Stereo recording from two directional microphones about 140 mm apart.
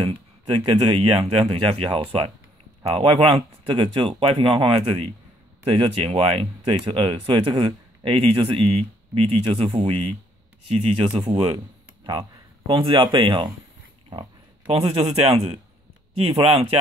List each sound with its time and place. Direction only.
0.0 s a man's voice: 40° right (ahead or behind)
14.7 s a man's voice: 45° right (ahead or behind)